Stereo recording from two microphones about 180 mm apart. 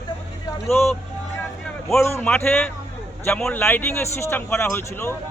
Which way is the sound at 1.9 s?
15° left (ahead or behind).